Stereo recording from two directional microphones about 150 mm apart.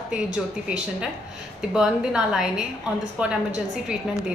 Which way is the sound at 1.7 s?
5° right (ahead or behind).